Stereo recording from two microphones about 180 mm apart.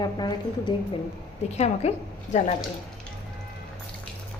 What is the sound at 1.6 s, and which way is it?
Speech, 40° left (ahead or behind).